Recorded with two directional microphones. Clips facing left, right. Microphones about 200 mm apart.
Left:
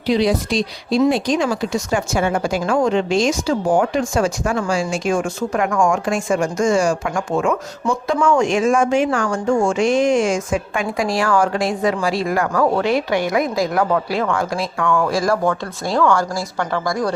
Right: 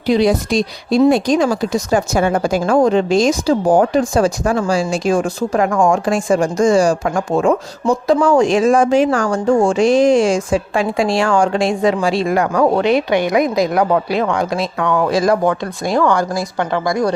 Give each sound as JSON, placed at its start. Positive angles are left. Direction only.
{"t": 0.0, "sound": "a woman's voice", "side_deg": -50}